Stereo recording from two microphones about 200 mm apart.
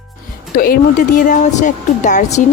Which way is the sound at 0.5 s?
45° left (ahead or behind).